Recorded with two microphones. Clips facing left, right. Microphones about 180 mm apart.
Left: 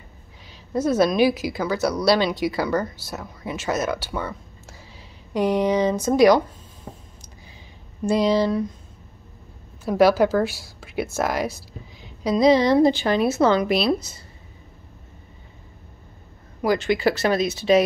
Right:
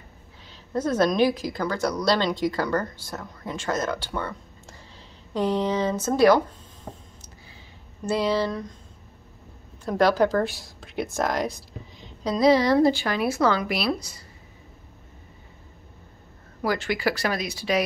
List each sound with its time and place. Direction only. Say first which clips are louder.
0.5 s a woman's voice: left 3 dB; 10° left (ahead or behind)
8.0 s a woman's voice: left 4 dB; 15° left (ahead or behind)
9.8 s a woman's voice: left 4 dB; 10° left (ahead or behind); by 14.2 s 25° left (ahead or behind)
16.6 s speech: left 5 dB; 20° left (ahead or behind)